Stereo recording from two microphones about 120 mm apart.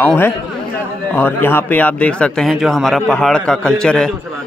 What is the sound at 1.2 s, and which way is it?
A man's voice, 20° left (ahead or behind).